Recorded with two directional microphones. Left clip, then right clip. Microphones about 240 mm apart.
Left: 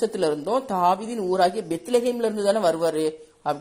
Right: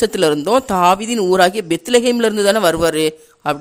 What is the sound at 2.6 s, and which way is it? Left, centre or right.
Speech, right.